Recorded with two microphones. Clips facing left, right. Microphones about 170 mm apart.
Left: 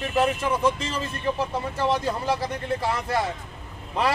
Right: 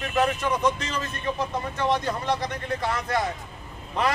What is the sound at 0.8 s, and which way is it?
Speech, 30° left (ahead or behind).